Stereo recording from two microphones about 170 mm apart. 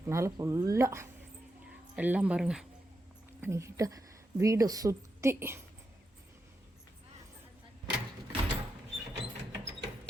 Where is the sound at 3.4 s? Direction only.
15° right (ahead or behind).